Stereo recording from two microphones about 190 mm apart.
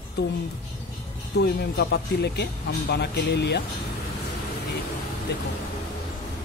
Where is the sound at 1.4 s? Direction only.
60° left (ahead or behind).